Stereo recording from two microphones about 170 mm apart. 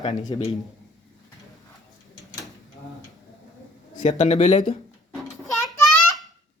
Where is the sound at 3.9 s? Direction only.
45° left (ahead or behind).